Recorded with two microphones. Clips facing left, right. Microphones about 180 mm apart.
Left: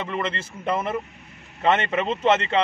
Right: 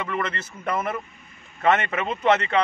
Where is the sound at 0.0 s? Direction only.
30° left (ahead or behind).